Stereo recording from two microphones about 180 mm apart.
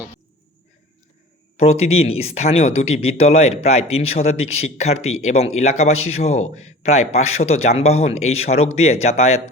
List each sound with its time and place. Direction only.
1.5 s speech: 35° left (ahead or behind)